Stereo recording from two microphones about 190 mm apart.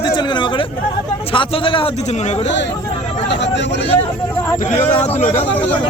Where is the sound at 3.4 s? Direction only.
70° left (ahead or behind).